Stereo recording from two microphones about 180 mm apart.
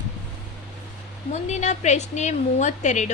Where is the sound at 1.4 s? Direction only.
40° left (ahead or behind).